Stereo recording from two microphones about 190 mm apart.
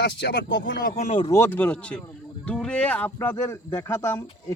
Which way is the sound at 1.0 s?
35° left (ahead or behind).